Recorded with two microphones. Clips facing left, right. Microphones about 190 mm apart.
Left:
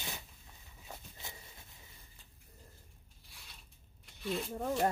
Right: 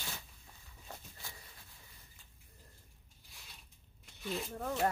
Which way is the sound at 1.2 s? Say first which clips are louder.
Left 2 dB; 20° left (ahead or behind).